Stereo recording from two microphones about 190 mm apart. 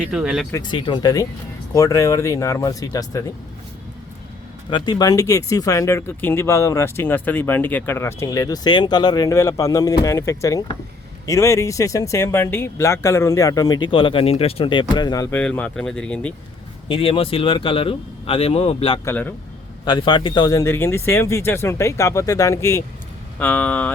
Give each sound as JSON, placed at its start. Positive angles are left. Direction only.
{"t": 0.0, "sound": "speech", "side_deg": -5}
{"t": 0.5, "sound": "speech", "side_deg": 25}
{"t": 4.7, "sound": "speech", "side_deg": 20}
{"t": 15.4, "sound": "speech", "side_deg": 5}
{"t": 16.9, "sound": "speech", "side_deg": 30}
{"t": 19.0, "sound": "speech", "side_deg": 10}
{"t": 19.8, "sound": "speech", "side_deg": 25}